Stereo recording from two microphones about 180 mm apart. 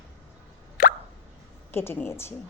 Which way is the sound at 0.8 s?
55° left (ahead or behind).